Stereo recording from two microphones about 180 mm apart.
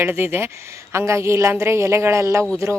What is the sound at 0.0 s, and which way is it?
A woman's voice, 15° right (ahead or behind).